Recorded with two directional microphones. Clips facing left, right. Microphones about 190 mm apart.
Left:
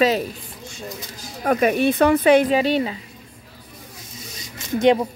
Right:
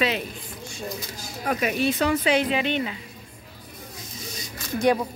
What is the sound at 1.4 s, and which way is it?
Speech, 50° left (ahead or behind).